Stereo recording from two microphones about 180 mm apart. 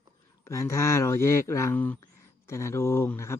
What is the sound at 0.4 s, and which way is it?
Speech, 15° left (ahead or behind).